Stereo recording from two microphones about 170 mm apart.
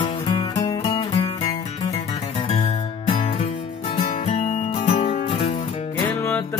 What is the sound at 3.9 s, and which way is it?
Music, 45° left (ahead or behind).